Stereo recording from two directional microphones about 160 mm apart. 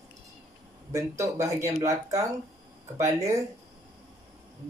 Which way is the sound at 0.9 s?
20° right (ahead or behind).